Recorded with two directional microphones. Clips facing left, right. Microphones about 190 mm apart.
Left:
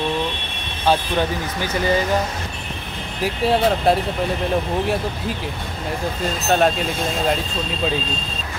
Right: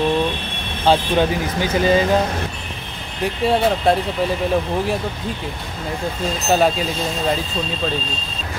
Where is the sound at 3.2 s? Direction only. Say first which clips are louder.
Right 1 dB; centre (ahead or behind).